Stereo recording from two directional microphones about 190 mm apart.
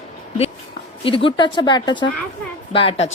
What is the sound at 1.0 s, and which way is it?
A woman's voice, 30° left (ahead or behind).